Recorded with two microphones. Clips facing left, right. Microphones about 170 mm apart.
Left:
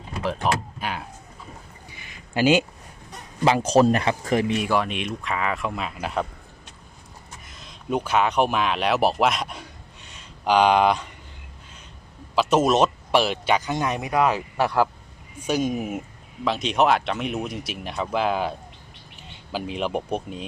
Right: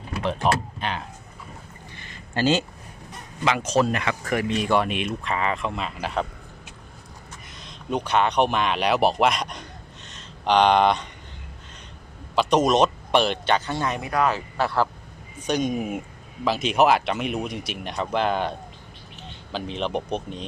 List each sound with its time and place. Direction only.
0.2 s speech: 5° left (ahead or behind)
1.9 s a sound: 10° left (ahead or behind)
3.4 s speech: 35° left (ahead or behind)
4.4 s speech: 10° left (ahead or behind)
7.6 s speech: 5° left (ahead or behind)
12.4 s speech: 5° left (ahead or behind)